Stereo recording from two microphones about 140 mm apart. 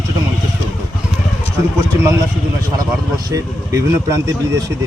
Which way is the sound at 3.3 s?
25° right (ahead or behind).